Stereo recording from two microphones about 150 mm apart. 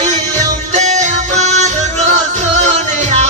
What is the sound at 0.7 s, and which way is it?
Music, 50° right (ahead or behind).